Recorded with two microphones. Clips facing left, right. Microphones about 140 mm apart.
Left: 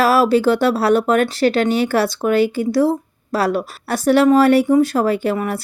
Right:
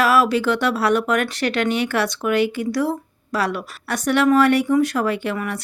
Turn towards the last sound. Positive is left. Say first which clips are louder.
# left 5 dB
turn(degrees=35)  # may be behind; listen again after turning